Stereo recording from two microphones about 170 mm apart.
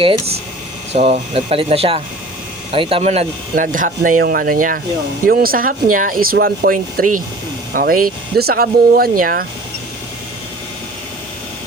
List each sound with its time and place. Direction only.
0.0 s speech: 30° right (ahead or behind); by 9.5 s 55° right (ahead or behind)